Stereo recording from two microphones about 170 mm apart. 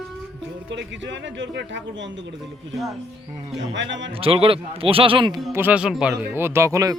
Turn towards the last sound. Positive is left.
turn(degrees=-20)  # may be behind; listen again after turning